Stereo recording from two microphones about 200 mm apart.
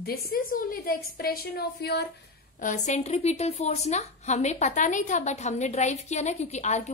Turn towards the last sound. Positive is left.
turn(degrees=35)  # may be behind; listen again after turning